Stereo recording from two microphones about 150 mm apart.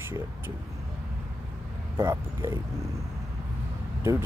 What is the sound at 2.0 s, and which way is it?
Speech, 20° right (ahead or behind).